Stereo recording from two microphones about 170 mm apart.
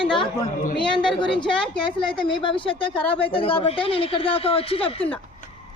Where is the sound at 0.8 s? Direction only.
30° left (ahead or behind).